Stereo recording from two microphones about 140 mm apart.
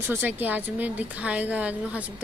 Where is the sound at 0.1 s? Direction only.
10° right (ahead or behind).